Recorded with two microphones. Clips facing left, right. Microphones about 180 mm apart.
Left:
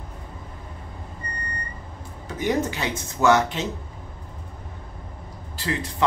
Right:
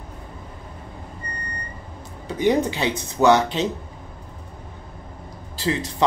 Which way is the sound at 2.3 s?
30° right (ahead or behind).